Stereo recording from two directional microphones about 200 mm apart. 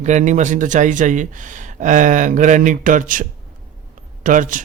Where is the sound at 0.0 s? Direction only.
35° right (ahead or behind).